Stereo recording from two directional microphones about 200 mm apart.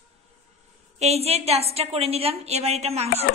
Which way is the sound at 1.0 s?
30° right (ahead or behind).